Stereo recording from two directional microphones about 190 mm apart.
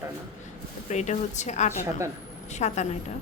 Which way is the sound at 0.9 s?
40° left (ahead or behind).